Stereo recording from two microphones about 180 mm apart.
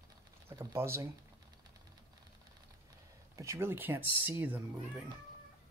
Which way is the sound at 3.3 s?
15° right (ahead or behind).